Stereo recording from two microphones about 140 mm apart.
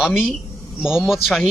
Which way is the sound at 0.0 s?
5° right (ahead or behind).